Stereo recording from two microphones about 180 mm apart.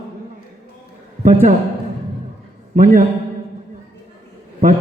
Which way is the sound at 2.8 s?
45° right (ahead or behind).